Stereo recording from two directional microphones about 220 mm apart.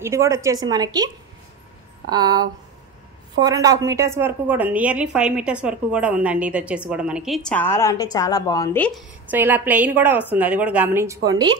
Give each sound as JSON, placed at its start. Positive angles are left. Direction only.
{"t": 0.0, "sound": "a woman's voice", "side_deg": -10}
{"t": 9.3, "sound": "a woman's voice", "side_deg": -10}